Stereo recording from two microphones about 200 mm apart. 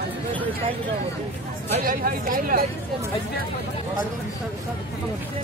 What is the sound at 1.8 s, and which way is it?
Speech, 45° right (ahead or behind).